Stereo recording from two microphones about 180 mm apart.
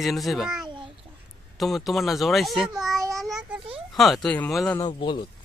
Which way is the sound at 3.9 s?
Centre (ahead or behind).